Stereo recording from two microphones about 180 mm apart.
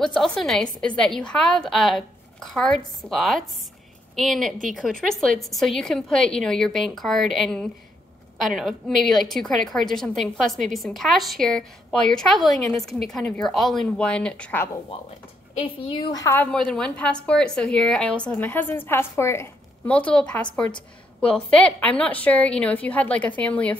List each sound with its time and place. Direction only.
0.0 s a woman's voice: centre (ahead or behind)
15.6 s a woman's voice: 30° left (ahead or behind)
16.5 s a woman's voice: 5° left (ahead or behind)